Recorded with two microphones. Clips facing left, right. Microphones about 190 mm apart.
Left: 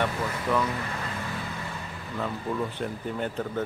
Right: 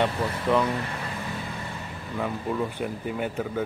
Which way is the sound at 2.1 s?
15° right (ahead or behind).